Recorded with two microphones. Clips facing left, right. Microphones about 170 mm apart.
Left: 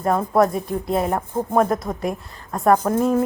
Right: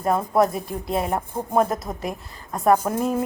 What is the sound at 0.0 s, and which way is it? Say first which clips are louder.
A woman's voice: left 2 dB; 5° right (ahead or behind).